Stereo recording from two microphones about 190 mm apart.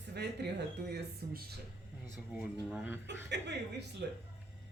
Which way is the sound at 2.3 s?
5° right (ahead or behind).